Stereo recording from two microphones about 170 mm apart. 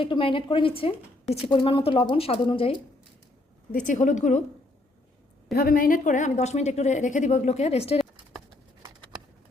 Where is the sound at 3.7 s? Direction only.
50° left (ahead or behind).